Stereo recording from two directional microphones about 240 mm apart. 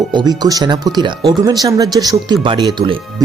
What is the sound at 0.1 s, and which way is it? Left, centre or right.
Speech, centre.